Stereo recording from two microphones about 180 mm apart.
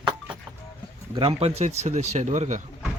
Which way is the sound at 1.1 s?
30° right (ahead or behind).